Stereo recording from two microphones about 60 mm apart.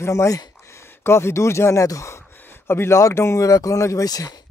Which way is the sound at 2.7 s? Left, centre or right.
Left.